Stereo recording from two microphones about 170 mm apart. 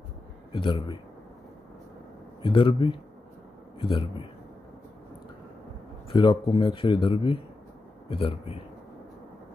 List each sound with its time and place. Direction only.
0.5 s speech: 30° left (ahead or behind)
2.4 s a man's voice: 30° left (ahead or behind)
6.0 s a man's voice: 25° left (ahead or behind)